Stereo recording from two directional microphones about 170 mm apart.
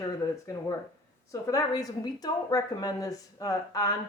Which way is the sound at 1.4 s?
20° left (ahead or behind).